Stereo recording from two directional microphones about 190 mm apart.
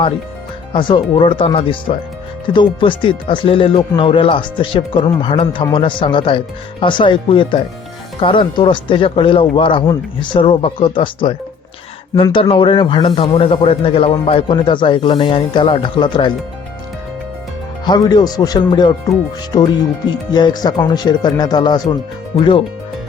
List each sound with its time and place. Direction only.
0.7 s speech: 25° left (ahead or behind)
17.8 s speech: 20° left (ahead or behind)
20.1 s speech: 20° left (ahead or behind)